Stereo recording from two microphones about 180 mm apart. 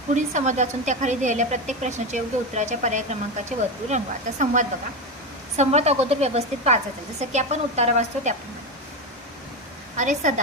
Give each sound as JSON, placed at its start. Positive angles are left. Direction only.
{"t": 0.1, "sound": "a woman's voice", "side_deg": -40}
{"t": 10.0, "sound": "a woman's voice", "side_deg": -45}